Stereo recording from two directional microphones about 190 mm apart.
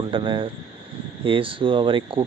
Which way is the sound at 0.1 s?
25° right (ahead or behind).